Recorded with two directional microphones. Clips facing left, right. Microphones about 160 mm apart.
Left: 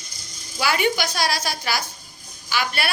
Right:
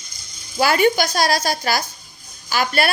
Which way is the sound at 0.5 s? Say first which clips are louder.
Right 6 dB; 40° right (ahead or behind).